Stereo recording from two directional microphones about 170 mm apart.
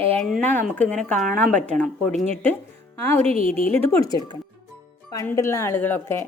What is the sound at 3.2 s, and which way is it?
Speech, 35° right (ahead or behind).